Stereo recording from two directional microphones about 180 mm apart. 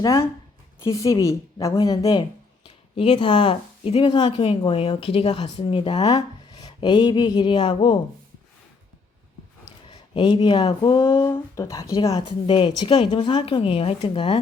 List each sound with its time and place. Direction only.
0.0 s a woman's voice: 15° left (ahead or behind)
2.6 s speech: 30° left (ahead or behind)
9.9 s speech: 25° left (ahead or behind)
12.5 s speech: 30° left (ahead or behind)